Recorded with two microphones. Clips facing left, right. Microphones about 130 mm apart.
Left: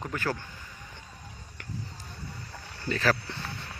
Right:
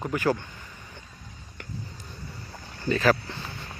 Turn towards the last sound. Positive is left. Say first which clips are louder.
# right 5 dB
turn(degrees=-15)  # may be behind; listen again after turning